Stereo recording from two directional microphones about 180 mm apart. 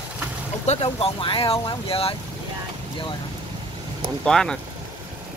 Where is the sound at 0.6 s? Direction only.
35° left (ahead or behind).